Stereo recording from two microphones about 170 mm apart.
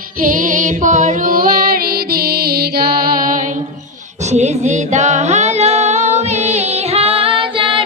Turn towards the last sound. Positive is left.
turn(degrees=-30)  # may be behind; listen again after turning